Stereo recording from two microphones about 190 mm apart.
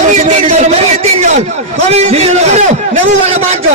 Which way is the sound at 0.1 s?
35° right (ahead or behind).